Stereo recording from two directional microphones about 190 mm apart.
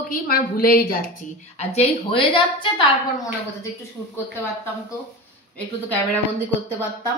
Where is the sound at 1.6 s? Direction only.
35° left (ahead or behind).